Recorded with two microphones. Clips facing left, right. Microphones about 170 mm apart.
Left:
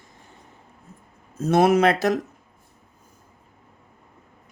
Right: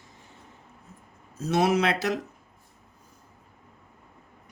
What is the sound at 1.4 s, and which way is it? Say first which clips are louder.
Speech: left 6 dB; 50° left (ahead or behind).